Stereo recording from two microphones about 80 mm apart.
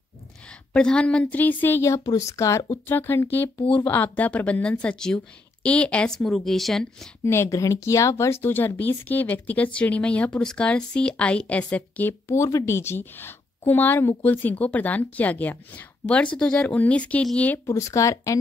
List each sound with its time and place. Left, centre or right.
0.5 s a woman's voice: centre
1.8 s speech: left
2.9 s a woman's voice: left; by 7.1 s centre
7.4 s a woman's voice: left
12.4 s a woman's voice: left; by 17.5 s centre
17.6 s speech: left